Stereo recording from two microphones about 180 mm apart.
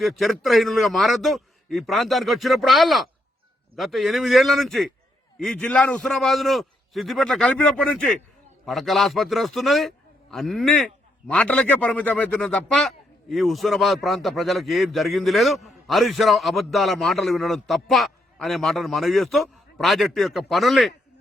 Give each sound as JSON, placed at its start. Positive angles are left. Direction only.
{"t": 0.0, "sound": "a man's voice", "side_deg": 0}